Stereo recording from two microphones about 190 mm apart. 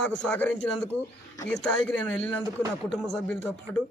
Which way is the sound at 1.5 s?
5° left (ahead or behind).